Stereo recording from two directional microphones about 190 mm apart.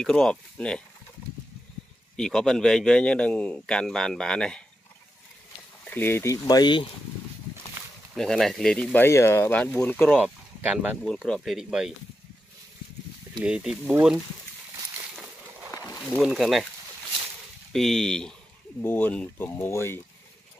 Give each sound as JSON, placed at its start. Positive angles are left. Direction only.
{"t": 0.0, "sound": "speech", "side_deg": 5}
{"t": 2.1, "sound": "speech", "side_deg": 5}
{"t": 5.9, "sound": "speech", "side_deg": 10}
{"t": 8.1, "sound": "speech", "side_deg": 0}
{"t": 10.1, "sound": "speech", "side_deg": -5}
{"t": 11.1, "sound": "speech", "side_deg": 5}
{"t": 13.4, "sound": "speech", "side_deg": -5}
{"t": 16.2, "sound": "speech", "side_deg": 0}
{"t": 17.7, "sound": "speech", "side_deg": 0}